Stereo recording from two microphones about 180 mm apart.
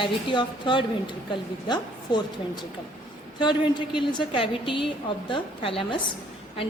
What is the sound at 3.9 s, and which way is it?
A woman's voice, 30° left (ahead or behind).